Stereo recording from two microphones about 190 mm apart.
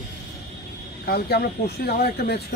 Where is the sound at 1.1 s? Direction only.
55° left (ahead or behind).